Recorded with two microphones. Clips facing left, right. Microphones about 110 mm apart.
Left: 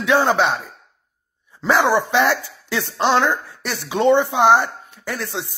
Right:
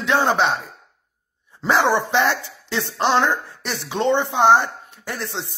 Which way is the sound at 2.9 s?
Centre (ahead or behind).